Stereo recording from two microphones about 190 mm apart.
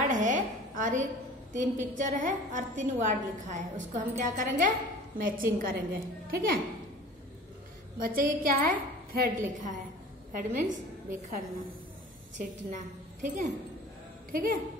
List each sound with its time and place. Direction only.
0.0 s a sound: 40° right (ahead or behind)
1.5 s a woman's voice: 40° right (ahead or behind)
8.0 s a woman's voice: 50° right (ahead or behind)
12.4 s a woman's voice: 40° right (ahead or behind)